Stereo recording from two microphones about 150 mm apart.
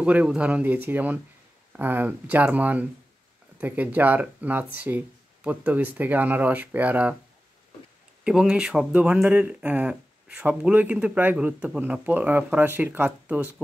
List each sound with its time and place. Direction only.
0.0 s speech: 10° right (ahead or behind)
8.2 s speech: 5° right (ahead or behind)